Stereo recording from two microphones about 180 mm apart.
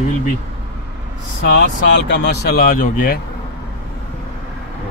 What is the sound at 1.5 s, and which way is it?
Speech, 75° left (ahead or behind).